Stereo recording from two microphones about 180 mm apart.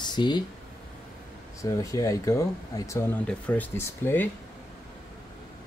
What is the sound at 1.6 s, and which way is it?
Speech, 20° left (ahead or behind).